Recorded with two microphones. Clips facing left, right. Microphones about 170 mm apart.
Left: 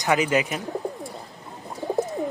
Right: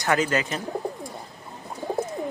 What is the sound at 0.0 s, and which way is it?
Speech, 15° left (ahead or behind).